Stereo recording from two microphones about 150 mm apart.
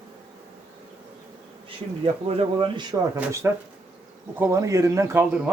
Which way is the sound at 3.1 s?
15° right (ahead or behind).